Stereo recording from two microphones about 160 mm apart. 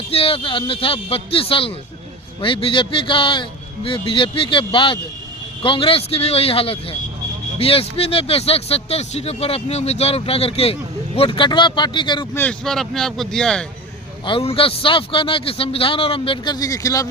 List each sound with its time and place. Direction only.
0.1 s speech: 35° left (ahead or behind)
12.3 s speech: 10° left (ahead or behind)
14.3 s speech: 35° left (ahead or behind)